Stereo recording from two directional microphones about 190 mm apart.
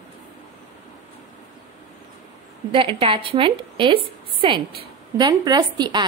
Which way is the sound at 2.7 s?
25° right (ahead or behind).